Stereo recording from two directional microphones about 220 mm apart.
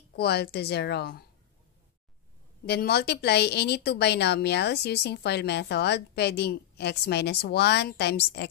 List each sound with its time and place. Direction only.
0.1 s speech: 45° left (ahead or behind)
2.6 s speech: 45° left (ahead or behind)